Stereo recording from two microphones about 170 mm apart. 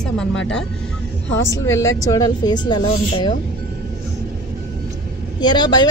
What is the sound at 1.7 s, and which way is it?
Speech, 20° left (ahead or behind).